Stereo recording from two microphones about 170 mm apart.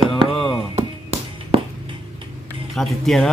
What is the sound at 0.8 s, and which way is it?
Music, 40° right (ahead or behind).